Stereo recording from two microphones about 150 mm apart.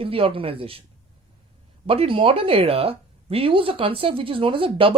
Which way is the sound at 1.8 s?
40° right (ahead or behind).